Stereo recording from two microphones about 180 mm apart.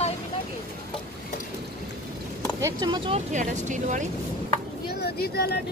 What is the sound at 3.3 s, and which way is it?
Speech, 45° right (ahead or behind).